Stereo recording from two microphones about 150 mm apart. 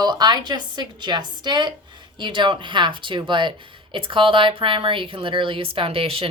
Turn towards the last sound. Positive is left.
turn(degrees=-40)  # may be behind; listen again after turning